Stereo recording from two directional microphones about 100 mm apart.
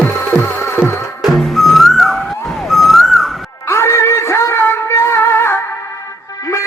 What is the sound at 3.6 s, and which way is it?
Music, 25° left (ahead or behind).